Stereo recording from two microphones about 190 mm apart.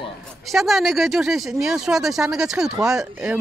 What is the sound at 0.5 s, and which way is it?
Speech, centre (ahead or behind).